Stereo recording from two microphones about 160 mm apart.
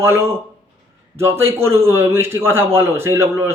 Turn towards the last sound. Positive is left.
turn(degrees=-15)  # may be behind; listen again after turning